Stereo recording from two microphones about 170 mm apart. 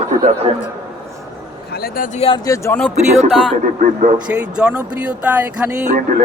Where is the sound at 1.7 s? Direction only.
65° left (ahead or behind).